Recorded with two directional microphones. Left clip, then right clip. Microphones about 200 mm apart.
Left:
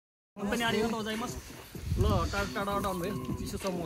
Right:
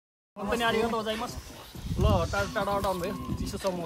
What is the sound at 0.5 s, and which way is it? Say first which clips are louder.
Speech: right 4 dB; 35° right (ahead or behind).